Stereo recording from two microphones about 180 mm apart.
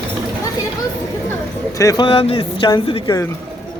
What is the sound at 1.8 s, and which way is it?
Speech, 20° left (ahead or behind).